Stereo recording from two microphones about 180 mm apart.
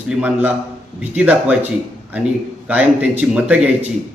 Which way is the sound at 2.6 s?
10° right (ahead or behind).